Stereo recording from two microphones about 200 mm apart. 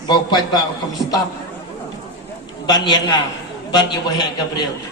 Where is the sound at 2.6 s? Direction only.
20° left (ahead or behind).